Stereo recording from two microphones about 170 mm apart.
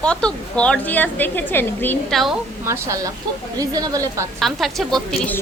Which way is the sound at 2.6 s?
15° right (ahead or behind).